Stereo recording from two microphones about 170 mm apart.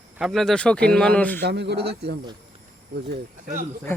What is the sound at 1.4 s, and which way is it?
Speech, 85° right.